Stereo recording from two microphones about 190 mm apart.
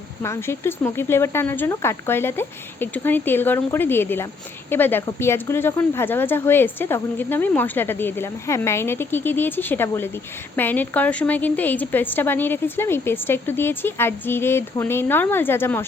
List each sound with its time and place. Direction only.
0.2 s speech: 15° left (ahead or behind)